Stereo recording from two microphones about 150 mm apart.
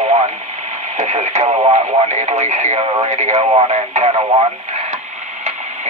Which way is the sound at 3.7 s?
50° right (ahead or behind).